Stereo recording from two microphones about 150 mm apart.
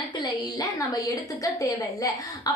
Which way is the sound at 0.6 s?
25° left (ahead or behind).